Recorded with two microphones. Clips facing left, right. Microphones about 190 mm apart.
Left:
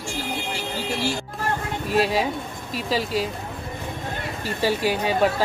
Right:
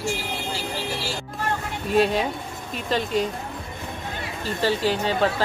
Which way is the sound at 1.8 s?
Centre (ahead or behind).